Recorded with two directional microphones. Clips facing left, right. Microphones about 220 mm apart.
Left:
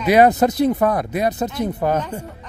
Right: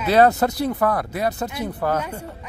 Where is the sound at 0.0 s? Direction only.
15° left (ahead or behind).